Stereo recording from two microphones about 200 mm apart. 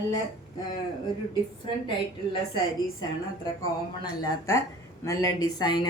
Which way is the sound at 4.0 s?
15° left (ahead or behind).